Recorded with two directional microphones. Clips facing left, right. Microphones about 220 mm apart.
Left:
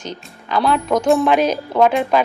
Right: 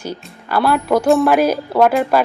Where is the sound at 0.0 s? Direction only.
5° right (ahead or behind).